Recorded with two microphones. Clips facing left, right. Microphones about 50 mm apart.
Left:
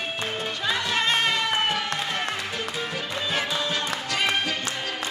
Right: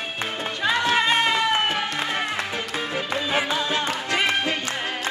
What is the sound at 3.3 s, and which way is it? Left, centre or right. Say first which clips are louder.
Music: right 3 dB; right.